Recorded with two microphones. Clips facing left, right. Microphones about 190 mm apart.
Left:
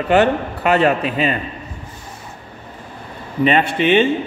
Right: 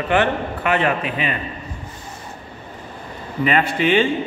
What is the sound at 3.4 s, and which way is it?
Speech, 25° left (ahead or behind).